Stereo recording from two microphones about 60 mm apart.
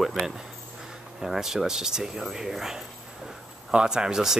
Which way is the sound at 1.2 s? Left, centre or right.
Centre.